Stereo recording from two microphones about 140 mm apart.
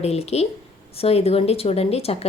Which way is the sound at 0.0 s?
50° left (ahead or behind).